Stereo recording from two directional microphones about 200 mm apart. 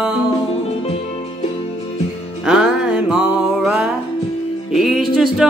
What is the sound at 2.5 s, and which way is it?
Music, 5° right (ahead or behind).